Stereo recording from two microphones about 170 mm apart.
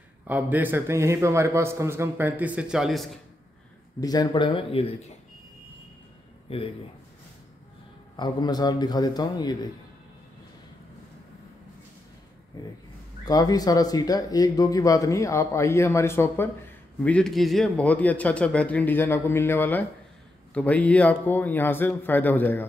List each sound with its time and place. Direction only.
0.3 s a man's voice: 10° right (ahead or behind)
4.0 s speech: 25° left (ahead or behind)
8.2 s speech: 25° left (ahead or behind)
13.2 s speech: 20° left (ahead or behind)